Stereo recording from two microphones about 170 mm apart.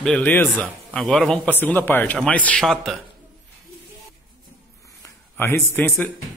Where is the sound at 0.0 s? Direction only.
10° left (ahead or behind).